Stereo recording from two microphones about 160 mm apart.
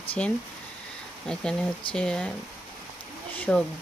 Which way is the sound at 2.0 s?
5° left (ahead or behind).